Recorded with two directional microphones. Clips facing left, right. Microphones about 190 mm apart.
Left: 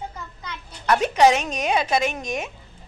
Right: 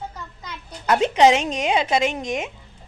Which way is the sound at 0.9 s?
20° right (ahead or behind).